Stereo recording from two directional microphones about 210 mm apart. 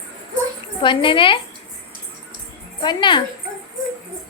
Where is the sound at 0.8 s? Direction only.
25° left (ahead or behind).